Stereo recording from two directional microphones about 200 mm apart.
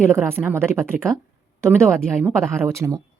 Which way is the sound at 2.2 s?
15° right (ahead or behind).